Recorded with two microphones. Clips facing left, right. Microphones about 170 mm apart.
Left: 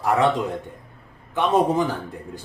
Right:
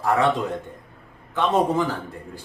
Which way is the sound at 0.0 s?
20° left (ahead or behind).